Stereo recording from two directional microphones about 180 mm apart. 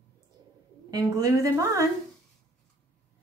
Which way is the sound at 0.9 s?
20° right (ahead or behind).